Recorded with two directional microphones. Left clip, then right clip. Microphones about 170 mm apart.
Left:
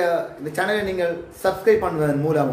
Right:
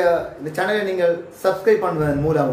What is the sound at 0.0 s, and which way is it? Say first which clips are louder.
A man's voice: right 3 dB; 15° left (ahead or behind).